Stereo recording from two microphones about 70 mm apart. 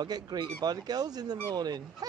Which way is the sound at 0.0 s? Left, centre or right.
Right.